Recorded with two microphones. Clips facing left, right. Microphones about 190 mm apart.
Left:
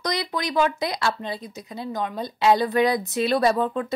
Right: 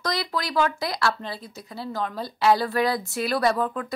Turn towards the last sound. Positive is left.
turn(degrees=25)  # may be behind; listen again after turning